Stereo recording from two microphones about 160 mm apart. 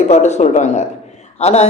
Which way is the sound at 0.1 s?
45° left (ahead or behind).